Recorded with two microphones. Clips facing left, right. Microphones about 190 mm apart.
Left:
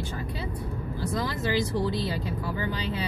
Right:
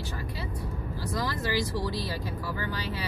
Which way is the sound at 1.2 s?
20° left (ahead or behind).